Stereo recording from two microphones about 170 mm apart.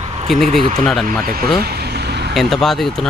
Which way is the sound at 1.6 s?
70° right (ahead or behind).